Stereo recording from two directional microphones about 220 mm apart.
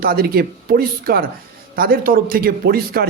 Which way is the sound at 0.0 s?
40° right (ahead or behind).